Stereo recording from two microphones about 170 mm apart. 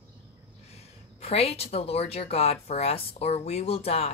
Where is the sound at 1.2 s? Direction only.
35° left (ahead or behind).